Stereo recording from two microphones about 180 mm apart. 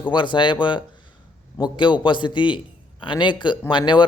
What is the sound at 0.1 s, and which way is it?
Speech, 25° left (ahead or behind).